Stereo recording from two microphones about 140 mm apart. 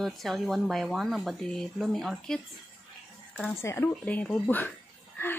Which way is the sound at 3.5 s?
15° left (ahead or behind).